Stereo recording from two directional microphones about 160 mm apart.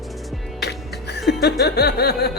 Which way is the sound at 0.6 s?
90° left.